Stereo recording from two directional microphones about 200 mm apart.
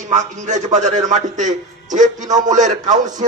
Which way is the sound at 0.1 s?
35° right (ahead or behind).